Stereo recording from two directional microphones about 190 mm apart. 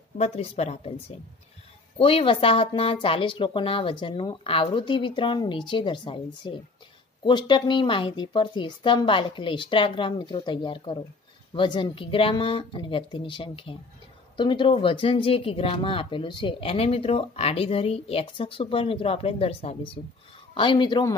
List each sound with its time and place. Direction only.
0.2 s speech: 35° left (ahead or behind)
2.0 s speech: 30° left (ahead or behind)